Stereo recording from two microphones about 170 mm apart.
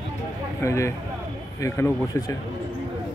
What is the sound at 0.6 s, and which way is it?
Speech, 15° left (ahead or behind).